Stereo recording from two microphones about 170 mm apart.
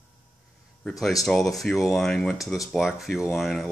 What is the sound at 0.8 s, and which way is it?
Speech, centre (ahead or behind).